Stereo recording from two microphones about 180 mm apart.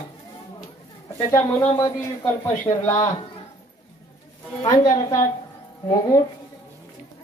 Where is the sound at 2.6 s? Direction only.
15° left (ahead or behind).